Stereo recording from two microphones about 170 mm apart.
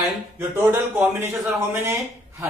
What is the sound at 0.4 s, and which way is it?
A man's voice, 15° right (ahead or behind).